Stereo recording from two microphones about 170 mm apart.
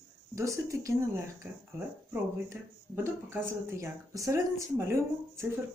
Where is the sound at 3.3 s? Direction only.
15° right (ahead or behind).